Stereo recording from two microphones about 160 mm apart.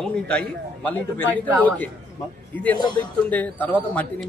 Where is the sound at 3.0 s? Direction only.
10° left (ahead or behind).